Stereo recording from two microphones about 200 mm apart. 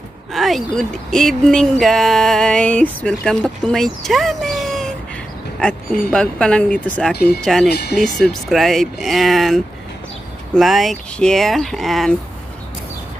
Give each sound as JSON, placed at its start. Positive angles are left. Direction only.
{"t": 0.3, "sound": "speech", "side_deg": 0}
{"t": 6.0, "sound": "speech", "side_deg": 5}
{"t": 7.2, "sound": "speech", "side_deg": 50}
{"t": 7.4, "sound": "speech", "side_deg": 0}